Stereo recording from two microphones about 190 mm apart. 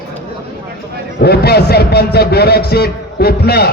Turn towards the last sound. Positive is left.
turn(degrees=55)  # may be behind; listen again after turning